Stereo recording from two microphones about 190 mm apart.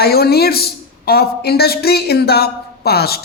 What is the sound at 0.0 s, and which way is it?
Speech, 55° left (ahead or behind).